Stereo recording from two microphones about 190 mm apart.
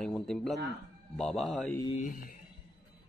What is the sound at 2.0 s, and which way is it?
Speech, 45° left (ahead or behind).